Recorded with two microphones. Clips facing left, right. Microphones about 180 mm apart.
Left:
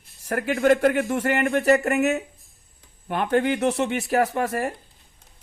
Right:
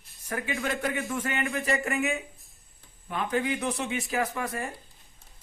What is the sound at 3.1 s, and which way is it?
Speech, 70° left (ahead or behind).